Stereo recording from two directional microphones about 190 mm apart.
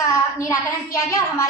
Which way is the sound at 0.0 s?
15° left (ahead or behind).